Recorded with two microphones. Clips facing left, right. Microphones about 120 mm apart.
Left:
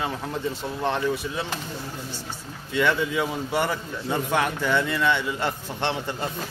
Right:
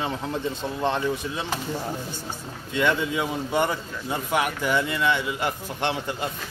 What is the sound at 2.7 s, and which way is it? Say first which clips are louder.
A man's voice: left 1 dB; 20° right (ahead or behind).